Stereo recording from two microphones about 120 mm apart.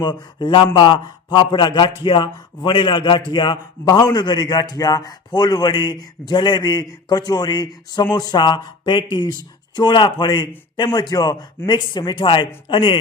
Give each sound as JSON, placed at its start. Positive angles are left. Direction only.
{"t": 0.0, "sound": "a man's voice", "side_deg": 35}